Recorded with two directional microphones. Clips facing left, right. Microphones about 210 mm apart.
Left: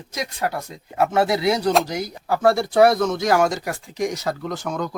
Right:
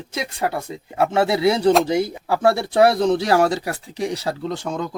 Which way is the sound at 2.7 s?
30° right (ahead or behind).